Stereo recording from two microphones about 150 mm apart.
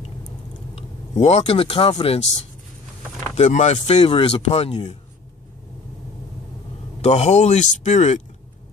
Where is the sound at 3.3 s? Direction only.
50° left (ahead or behind).